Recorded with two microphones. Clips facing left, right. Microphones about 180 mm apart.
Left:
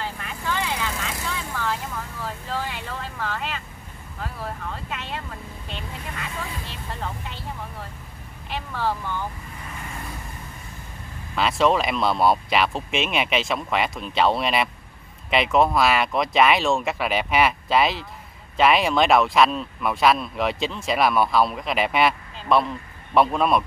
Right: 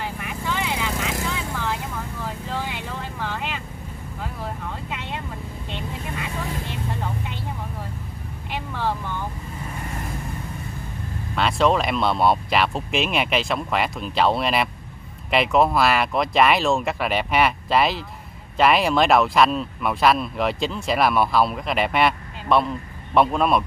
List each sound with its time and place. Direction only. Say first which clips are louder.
0.0 s vehicle: right 1 dB; 15° right (ahead or behind)
2.2 s vehicle: even; 15° right (ahead or behind)
4.8 s vehicle: right 1 dB; 15° right (ahead or behind)
8.5 s vehicle: even; 15° right (ahead or behind)
11.3 s speech: even; centre (ahead or behind)